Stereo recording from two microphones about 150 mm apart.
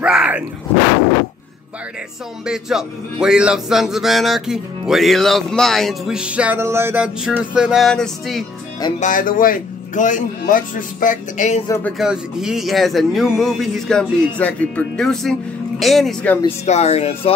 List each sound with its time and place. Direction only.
0.0 s a sound: 5° right (ahead or behind)
2.4 s speech: 5° right (ahead or behind)
9.0 s a man's voice: 65° left (ahead or behind)
12.0 s speech: 5° right (ahead or behind)
16.4 s speech: 45° left (ahead or behind)